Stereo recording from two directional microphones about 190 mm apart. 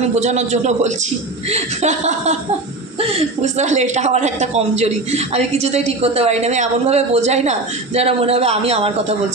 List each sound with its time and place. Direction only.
0.1 s a woman's voice: 35° right (ahead or behind)